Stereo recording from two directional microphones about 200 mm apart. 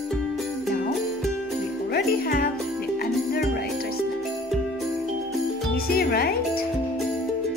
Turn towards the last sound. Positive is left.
turn(degrees=50)  # may be behind; listen again after turning